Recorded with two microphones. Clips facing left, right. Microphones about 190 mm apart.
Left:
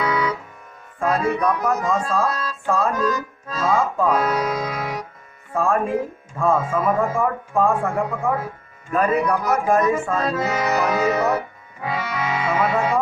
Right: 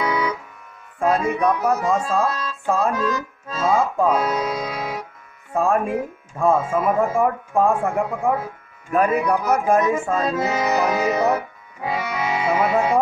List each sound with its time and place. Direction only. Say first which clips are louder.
0.0 s music: even; 15° right (ahead or behind)
0.9 s speech: right 1 dB; 10° right (ahead or behind)
2.6 s music: right 1 dB; 15° right (ahead or behind)
3.5 s speech: right 1 dB; 15° right (ahead or behind)
10.0 s music: right 1 dB; 10° right (ahead or behind)